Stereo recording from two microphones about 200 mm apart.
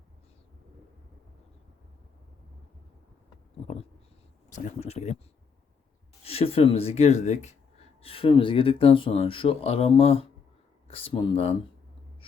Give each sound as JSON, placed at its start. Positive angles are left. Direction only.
{"t": 4.4, "sound": "speech", "side_deg": 35}
{"t": 6.2, "sound": "speech", "side_deg": 30}